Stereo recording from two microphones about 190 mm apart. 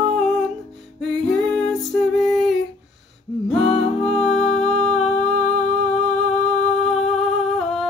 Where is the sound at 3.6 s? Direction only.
30° left (ahead or behind).